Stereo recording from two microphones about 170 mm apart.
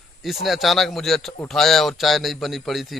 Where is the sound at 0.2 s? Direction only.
Centre (ahead or behind).